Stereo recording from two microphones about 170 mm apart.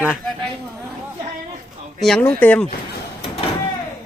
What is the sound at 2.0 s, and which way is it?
Speech, 5° left (ahead or behind).